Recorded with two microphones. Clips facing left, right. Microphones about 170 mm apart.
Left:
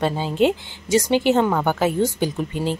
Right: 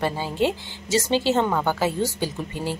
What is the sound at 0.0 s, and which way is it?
Speech, 20° left (ahead or behind).